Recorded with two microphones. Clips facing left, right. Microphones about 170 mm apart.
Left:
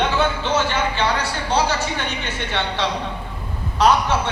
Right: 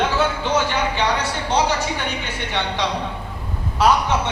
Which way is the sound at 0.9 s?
20° right (ahead or behind).